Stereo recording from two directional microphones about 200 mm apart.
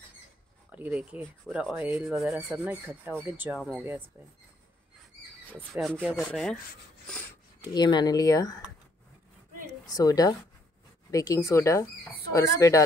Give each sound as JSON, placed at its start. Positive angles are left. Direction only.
{"t": 0.7, "sound": "speech", "side_deg": -10}
{"t": 3.5, "sound": "speech", "side_deg": 0}
{"t": 5.5, "sound": "speech", "side_deg": -5}
{"t": 7.7, "sound": "speech", "side_deg": 20}
{"t": 9.8, "sound": "speech", "side_deg": 20}